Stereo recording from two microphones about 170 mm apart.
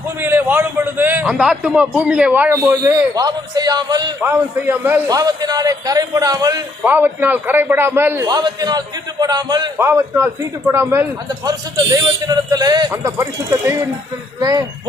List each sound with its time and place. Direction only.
0.2 s a man's voice: 10° right (ahead or behind)
4.2 s a man's voice: 15° right (ahead or behind)
6.8 s a man's voice: 10° right (ahead or behind)
8.3 s a man's voice: 25° right (ahead or behind)
12.3 s a man's voice: 20° right (ahead or behind)